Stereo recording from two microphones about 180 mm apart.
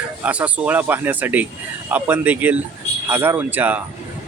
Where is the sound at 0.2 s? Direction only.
10° right (ahead or behind).